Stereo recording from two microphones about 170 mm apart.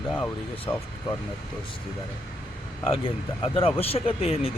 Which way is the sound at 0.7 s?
25° left (ahead or behind).